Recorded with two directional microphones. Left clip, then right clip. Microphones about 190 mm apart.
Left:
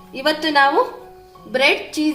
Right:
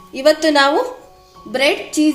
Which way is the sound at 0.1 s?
30° right (ahead or behind).